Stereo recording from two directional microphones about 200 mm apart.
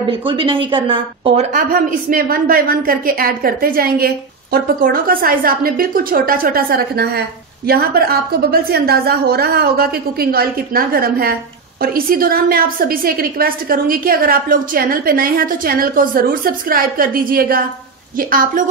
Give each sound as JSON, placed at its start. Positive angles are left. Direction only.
{"t": 0.2, "sound": "speech", "side_deg": -25}
{"t": 1.5, "sound": "a woman's voice", "side_deg": -45}